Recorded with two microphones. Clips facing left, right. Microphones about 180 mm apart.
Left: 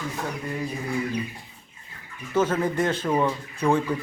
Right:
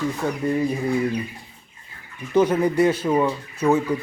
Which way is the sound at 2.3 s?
15° right (ahead or behind).